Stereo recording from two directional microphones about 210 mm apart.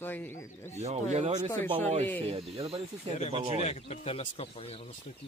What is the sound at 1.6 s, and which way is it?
Speech, 10° left (ahead or behind).